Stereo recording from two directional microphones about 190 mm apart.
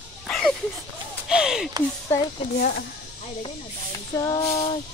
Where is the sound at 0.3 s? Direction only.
Centre (ahead or behind).